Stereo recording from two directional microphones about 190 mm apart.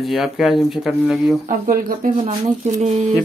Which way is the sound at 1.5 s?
50° right (ahead or behind).